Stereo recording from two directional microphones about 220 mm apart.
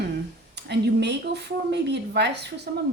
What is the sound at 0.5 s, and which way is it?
A woman's voice, 50° right (ahead or behind).